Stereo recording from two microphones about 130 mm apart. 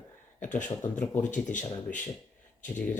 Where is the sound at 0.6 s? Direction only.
15° left (ahead or behind).